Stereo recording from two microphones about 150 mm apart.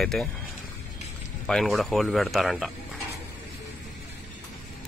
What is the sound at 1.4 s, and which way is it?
Speech, centre (ahead or behind).